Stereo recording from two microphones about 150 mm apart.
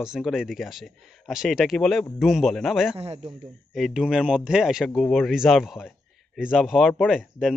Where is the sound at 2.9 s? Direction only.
40° right (ahead or behind).